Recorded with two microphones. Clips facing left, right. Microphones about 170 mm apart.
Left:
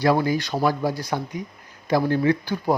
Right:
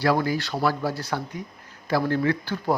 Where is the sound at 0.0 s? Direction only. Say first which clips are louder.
Left 3 dB; 20° left (ahead or behind).